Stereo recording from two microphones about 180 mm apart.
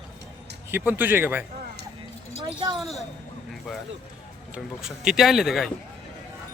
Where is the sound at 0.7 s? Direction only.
10° right (ahead or behind).